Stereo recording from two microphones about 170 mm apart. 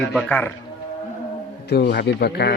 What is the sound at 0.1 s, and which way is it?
Speech, 5° left (ahead or behind).